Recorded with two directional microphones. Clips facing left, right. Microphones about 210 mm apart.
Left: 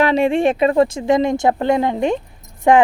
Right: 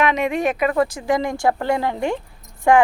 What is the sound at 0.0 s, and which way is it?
Speech, 30° left (ahead or behind).